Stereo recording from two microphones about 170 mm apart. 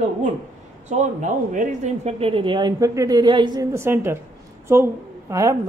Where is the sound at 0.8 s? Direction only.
45° right (ahead or behind); by 3.6 s 25° right (ahead or behind).